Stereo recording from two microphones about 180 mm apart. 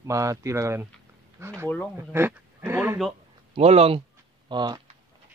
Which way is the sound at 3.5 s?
35° right (ahead or behind).